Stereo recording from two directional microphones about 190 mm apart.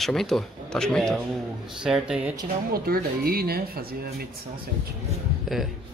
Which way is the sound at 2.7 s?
50° right (ahead or behind).